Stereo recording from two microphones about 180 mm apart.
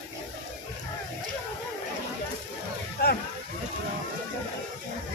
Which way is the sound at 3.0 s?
60° left (ahead or behind).